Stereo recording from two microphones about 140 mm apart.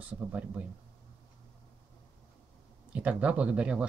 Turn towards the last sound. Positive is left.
turn(degrees=-10)  # may be behind; listen again after turning